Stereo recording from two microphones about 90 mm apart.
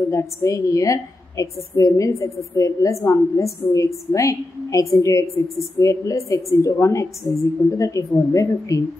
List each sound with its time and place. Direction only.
0.1 s a woman's voice: 35° left (ahead or behind)